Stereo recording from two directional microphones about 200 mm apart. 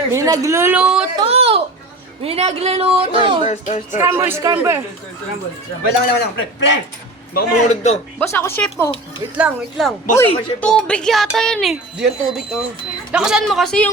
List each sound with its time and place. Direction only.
0.1 s speech: 15° right (ahead or behind)
1.1 s a sound: 30° right (ahead or behind)
2.2 s speech: 30° right (ahead or behind)
3.4 s speech: 35° left (ahead or behind)
4.0 s speech: 15° right (ahead or behind)
6.1 s a man's voice: 60° left (ahead or behind)
7.3 s speech: 35° left (ahead or behind)
8.2 s speech: 10° left (ahead or behind)
9.4 s speech: 5° right (ahead or behind)
13.1 s speech: 5° right (ahead or behind)